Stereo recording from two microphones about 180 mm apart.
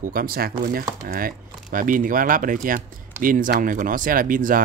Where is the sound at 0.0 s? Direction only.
50° right (ahead or behind).